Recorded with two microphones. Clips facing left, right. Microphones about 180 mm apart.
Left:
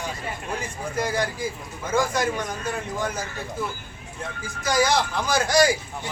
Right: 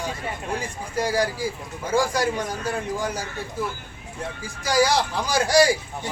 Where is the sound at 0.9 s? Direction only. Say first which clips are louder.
Right 3 dB; 35° right (ahead or behind).